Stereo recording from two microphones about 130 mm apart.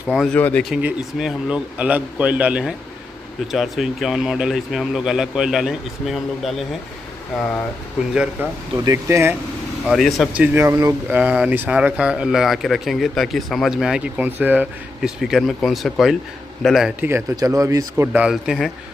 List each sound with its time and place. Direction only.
0.0 s speech: 5° right (ahead or behind)
0.3 s speech: 10° left (ahead or behind)
0.7 s speech: 10° right (ahead or behind)
8.1 s speech: 10° right (ahead or behind)
8.7 s speech: 20° right (ahead or behind)
9.8 s speech: centre (ahead or behind)
10.3 s speech: 10° right (ahead or behind)
10.6 s speech: 25° right (ahead or behind)
11.1 s speech: 10° right (ahead or behind)
17.0 s speech: 20° right (ahead or behind)
18.3 s speech: 5° right (ahead or behind)